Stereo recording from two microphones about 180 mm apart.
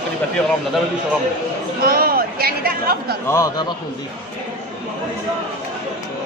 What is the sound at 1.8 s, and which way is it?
Speech, 55° right (ahead or behind).